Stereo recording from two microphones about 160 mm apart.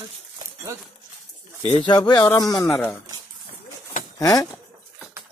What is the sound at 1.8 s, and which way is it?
Speech, 25° left (ahead or behind).